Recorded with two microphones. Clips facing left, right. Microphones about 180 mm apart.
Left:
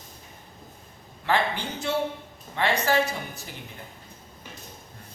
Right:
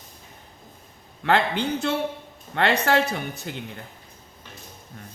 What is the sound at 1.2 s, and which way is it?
Speech, 65° right (ahead or behind).